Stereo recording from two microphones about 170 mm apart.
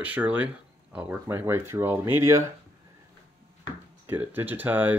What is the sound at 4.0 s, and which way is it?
Speech, 10° right (ahead or behind).